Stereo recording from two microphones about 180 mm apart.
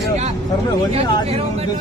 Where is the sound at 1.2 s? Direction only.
35° right (ahead or behind).